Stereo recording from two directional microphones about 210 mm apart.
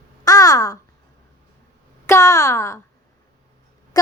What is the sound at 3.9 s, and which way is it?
Music, 15° left (ahead or behind).